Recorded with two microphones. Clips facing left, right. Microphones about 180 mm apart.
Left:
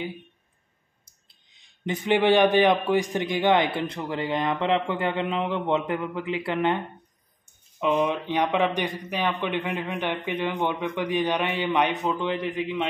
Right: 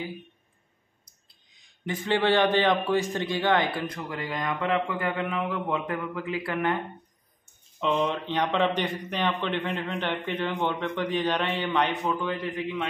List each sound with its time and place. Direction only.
1.9 s a man's voice: 15° left (ahead or behind)
7.8 s a man's voice: 10° left (ahead or behind)